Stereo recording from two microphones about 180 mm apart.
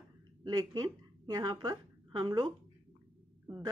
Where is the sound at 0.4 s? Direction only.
25° right (ahead or behind).